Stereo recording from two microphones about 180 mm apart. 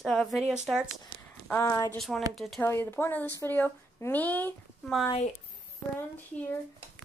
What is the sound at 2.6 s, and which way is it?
Speech, 10° left (ahead or behind).